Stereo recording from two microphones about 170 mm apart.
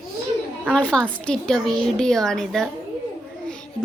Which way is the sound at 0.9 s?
5° left (ahead or behind).